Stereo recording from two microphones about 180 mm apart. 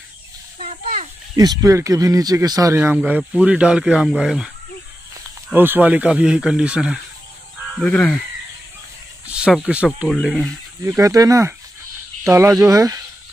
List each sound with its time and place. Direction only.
0.6 s a sound: 45° right (ahead or behind)
1.3 s speech: 20° right (ahead or behind)
7.8 s speech: 5° left (ahead or behind)
9.2 s speech: 5° right (ahead or behind)
10.8 s speech: 15° right (ahead or behind)